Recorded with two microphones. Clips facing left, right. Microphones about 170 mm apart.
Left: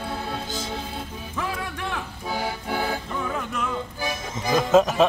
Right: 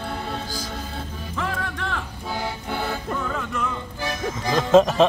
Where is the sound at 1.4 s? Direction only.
15° left (ahead or behind).